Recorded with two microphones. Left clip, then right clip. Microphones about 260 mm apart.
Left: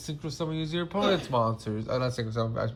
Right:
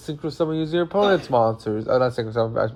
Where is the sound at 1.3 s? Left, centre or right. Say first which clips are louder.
Right 8 dB; right.